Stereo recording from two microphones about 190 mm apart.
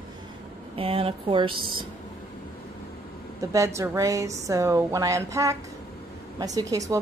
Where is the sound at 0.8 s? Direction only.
30° right (ahead or behind).